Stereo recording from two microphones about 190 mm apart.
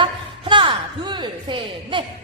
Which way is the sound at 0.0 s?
25° right (ahead or behind).